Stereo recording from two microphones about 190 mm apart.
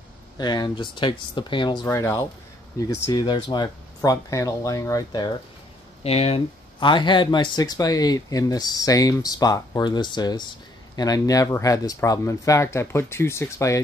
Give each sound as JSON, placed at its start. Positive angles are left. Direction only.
{"t": 0.4, "sound": "speech", "side_deg": 20}
{"t": 6.0, "sound": "speech", "side_deg": 30}